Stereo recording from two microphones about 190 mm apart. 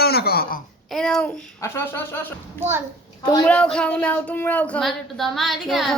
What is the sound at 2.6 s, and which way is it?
Speech, 10° right (ahead or behind).